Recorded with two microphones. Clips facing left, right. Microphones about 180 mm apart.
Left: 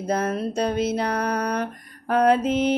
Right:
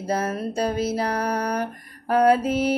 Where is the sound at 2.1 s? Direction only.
10° right (ahead or behind).